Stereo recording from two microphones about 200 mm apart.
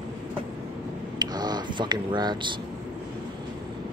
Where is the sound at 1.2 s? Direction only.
20° right (ahead or behind).